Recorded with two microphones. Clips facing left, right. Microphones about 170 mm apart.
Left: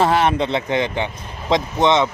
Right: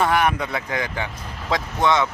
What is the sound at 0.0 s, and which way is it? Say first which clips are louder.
Speech: left 3 dB; 25° left (ahead or behind).